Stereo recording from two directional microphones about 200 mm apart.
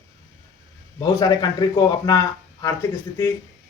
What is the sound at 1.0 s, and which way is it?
A man's voice, 20° left (ahead or behind).